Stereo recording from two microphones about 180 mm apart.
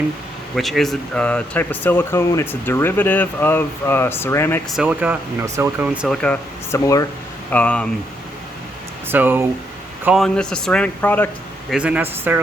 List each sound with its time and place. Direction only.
0.5 s speech: centre (ahead or behind)
4.7 s speech: 5° right (ahead or behind)
6.2 s speech: 10° left (ahead or behind)
7.5 s speech: 5° left (ahead or behind)
9.0 s speech: 10° right (ahead or behind)
10.2 s speech: 5° left (ahead or behind)
11.7 s speech: 5° right (ahead or behind)